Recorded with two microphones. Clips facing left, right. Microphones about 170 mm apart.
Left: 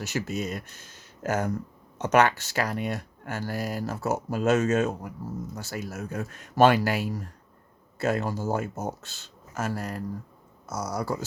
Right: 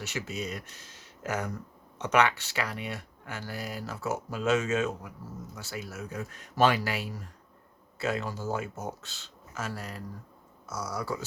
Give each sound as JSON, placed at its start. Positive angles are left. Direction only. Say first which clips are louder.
{"t": 0.1, "sound": "speech", "louder": "left 6 dB", "side_deg": 45}